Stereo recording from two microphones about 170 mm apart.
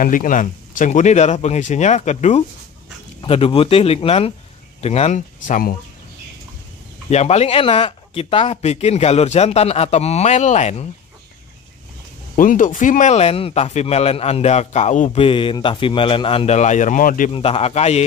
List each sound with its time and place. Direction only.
0.0 s speech: 50° left (ahead or behind)
7.1 s speech: 40° left (ahead or behind)
12.4 s speech: 50° left (ahead or behind)
17.3 s speech: 35° left (ahead or behind)